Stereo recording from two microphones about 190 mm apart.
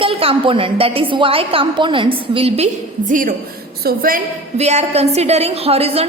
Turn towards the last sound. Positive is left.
turn(degrees=-30)  # may be behind; listen again after turning